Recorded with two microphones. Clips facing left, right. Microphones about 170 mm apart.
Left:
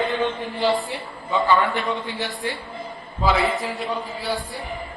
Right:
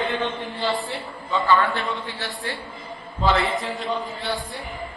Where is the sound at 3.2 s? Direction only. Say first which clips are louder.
Left 1 dB; 5° left (ahead or behind).